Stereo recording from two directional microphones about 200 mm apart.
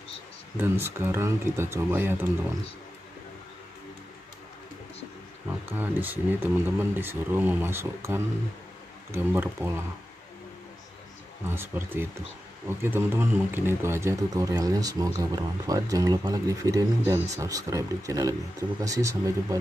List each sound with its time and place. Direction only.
0.6 s speech: 10° right (ahead or behind)
5.5 s speech: 10° right (ahead or behind)
11.4 s speech: 10° right (ahead or behind)